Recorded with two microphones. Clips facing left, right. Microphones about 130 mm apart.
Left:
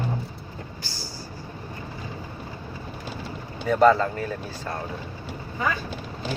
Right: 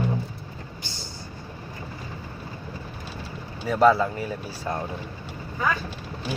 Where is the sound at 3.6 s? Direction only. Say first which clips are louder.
Left 1 dB; 5° right (ahead or behind).